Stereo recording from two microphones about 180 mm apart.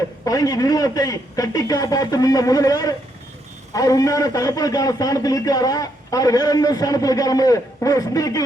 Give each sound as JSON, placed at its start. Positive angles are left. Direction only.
{"t": 0.3, "sound": "a man's voice", "side_deg": 20}